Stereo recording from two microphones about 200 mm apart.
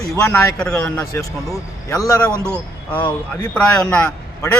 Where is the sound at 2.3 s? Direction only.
10° right (ahead or behind).